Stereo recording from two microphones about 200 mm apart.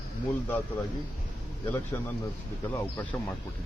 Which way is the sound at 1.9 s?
10° left (ahead or behind).